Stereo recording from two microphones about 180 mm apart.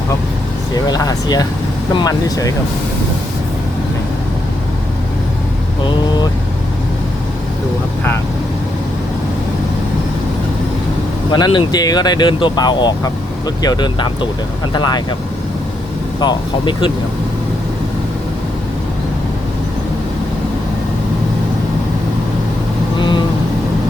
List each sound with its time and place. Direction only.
0.9 s speech: 20° left (ahead or behind)
11.3 s speech: 25° left (ahead or behind)
16.2 s speech: 25° left (ahead or behind)
23.0 s vehicle: 25° left (ahead or behind)